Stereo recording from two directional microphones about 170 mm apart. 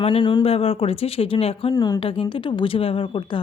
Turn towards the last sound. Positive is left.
turn(degrees=30)  # may be behind; listen again after turning